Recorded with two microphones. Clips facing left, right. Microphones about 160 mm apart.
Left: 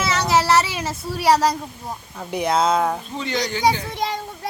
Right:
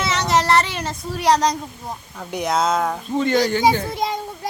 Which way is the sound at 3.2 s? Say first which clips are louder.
Right 11 dB; 50° right (ahead or behind).